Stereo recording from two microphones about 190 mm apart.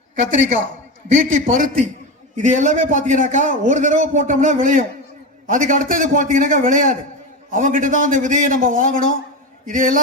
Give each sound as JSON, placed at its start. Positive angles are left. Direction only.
{"t": 1.0, "sound": "a man's voice", "side_deg": -45}